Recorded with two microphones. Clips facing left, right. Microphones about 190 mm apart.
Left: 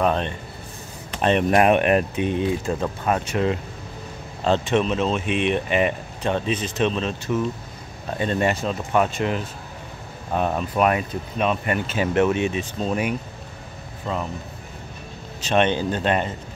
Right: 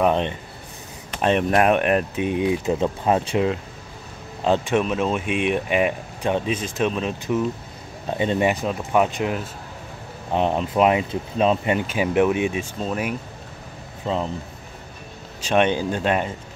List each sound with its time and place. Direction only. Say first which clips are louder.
0.0 s speech: right 2 dB; 15° right (ahead or behind)
1.2 s speech: left 1 dB; centre (ahead or behind); by 3.3 s 25° right (ahead or behind)
4.5 s speech: even; 10° right (ahead or behind)
10.3 s speech: right 2 dB; 20° right (ahead or behind)
12.8 s speech: left 2 dB; centre (ahead or behind)
14.0 s speech: right 3 dB; 25° right (ahead or behind)
15.4 s speech: right 1 dB; 10° right (ahead or behind)